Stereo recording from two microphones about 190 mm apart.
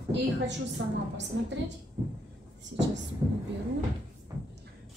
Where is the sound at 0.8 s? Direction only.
70° right (ahead or behind).